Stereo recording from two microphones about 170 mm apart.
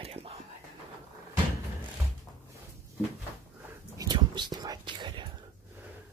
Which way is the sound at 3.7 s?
20° right (ahead or behind).